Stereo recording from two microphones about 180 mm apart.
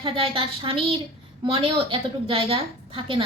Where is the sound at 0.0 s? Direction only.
30° right (ahead or behind).